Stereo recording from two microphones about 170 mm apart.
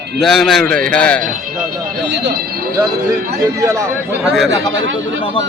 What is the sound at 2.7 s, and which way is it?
Speech, 25° right (ahead or behind).